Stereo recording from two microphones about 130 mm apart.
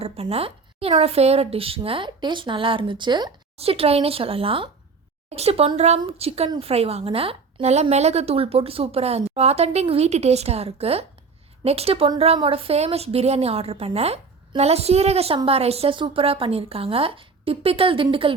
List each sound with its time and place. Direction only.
0.0 s a woman's voice: 50° right (ahead or behind)
3.6 s a woman's voice: 50° right (ahead or behind)